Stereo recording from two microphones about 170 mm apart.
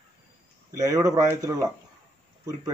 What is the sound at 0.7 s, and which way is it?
Speech, 20° right (ahead or behind).